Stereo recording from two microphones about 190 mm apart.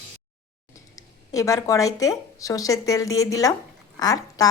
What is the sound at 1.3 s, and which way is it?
Speech, 15° left (ahead or behind).